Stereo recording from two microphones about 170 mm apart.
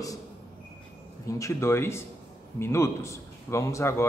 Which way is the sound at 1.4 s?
15° left (ahead or behind).